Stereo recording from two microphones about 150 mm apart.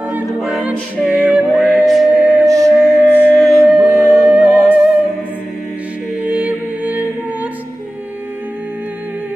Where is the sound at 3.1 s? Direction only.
15° left (ahead or behind).